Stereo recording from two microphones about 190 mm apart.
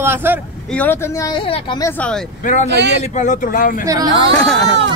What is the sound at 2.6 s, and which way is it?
Speech, 65° right (ahead or behind).